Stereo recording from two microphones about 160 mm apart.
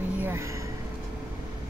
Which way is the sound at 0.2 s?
15° right (ahead or behind).